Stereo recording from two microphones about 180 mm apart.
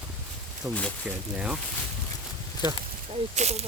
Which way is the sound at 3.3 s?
35° right (ahead or behind).